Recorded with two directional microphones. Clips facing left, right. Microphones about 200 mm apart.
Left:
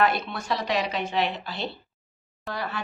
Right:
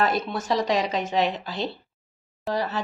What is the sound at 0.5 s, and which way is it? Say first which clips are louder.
Speech: right 3 dB; 40° right (ahead or behind).